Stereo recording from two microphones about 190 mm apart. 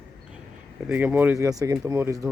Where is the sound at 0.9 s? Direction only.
10° right (ahead or behind).